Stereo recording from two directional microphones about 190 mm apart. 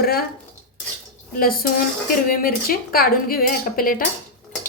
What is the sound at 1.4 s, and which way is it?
Speech, 50° left (ahead or behind).